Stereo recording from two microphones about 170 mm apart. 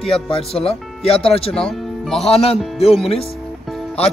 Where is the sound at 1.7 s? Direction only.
Centre (ahead or behind).